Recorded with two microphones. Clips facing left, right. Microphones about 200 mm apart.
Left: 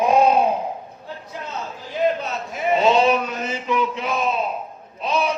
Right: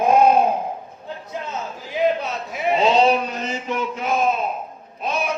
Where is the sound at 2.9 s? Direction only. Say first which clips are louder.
Right 1 dB; 35° right (ahead or behind).